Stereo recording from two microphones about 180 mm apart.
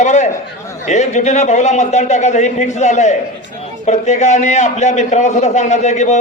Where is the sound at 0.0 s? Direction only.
40° left (ahead or behind).